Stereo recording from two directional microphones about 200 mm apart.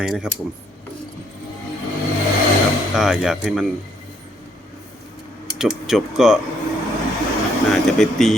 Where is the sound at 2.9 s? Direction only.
5° right (ahead or behind).